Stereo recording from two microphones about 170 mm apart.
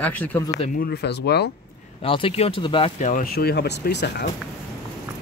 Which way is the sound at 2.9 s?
50° left (ahead or behind).